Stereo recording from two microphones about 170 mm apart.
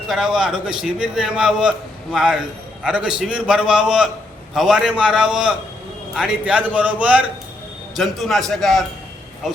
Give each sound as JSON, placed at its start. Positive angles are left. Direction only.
{"t": 0.1, "sound": "a man's voice", "side_deg": -5}